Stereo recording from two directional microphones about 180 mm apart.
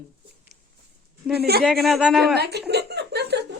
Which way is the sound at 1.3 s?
60° right (ahead or behind).